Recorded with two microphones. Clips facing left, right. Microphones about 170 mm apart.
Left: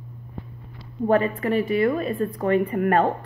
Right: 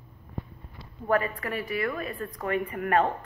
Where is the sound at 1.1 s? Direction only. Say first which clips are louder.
Left 6 dB; 25° left (ahead or behind).